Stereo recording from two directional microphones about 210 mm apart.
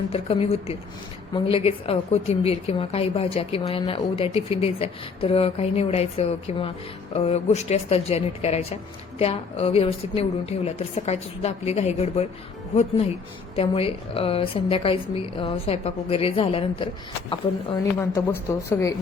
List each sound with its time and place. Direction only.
0.1 s a woman's voice: 25° left (ahead or behind)
13.6 s a woman's voice: 25° left (ahead or behind); by 18.9 s 10° left (ahead or behind)